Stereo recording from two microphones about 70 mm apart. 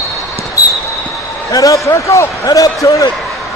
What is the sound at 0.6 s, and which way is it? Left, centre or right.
Basketball bounce, left.